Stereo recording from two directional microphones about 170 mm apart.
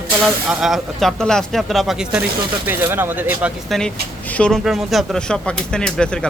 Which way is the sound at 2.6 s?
15° right (ahead or behind).